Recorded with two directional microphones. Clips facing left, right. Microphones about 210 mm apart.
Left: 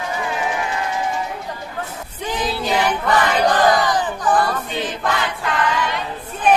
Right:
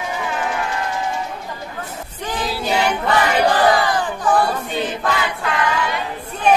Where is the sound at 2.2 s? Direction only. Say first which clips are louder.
Left 1 dB; 10° right (ahead or behind).